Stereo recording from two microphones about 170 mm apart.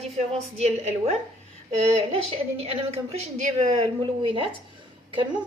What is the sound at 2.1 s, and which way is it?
A woman's voice, 35° right (ahead or behind).